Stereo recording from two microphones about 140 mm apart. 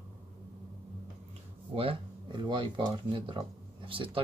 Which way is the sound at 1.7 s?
40° right (ahead or behind).